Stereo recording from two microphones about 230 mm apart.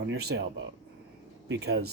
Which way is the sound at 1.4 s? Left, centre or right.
Right.